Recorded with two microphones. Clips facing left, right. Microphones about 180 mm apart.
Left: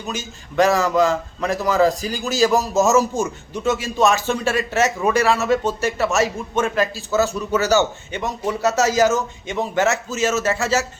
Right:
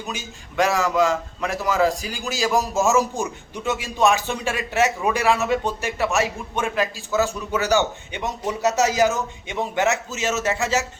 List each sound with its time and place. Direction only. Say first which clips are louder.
0.1 s a man's voice: left 4 dB; 10° right (ahead or behind)
1.5 s a man's voice: left 3 dB; 35° left (ahead or behind)
2.5 s a man's voice: even; 15° right (ahead or behind)